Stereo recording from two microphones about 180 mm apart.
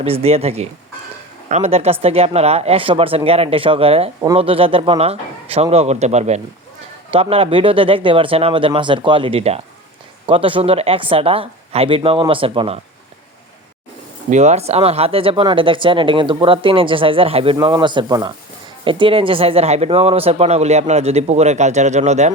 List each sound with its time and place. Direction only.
0.0 s speech: 35° right (ahead or behind)
14.3 s speech: 40° right (ahead or behind)